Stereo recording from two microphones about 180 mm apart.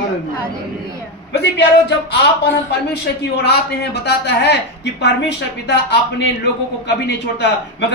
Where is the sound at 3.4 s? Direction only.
65° left (ahead or behind).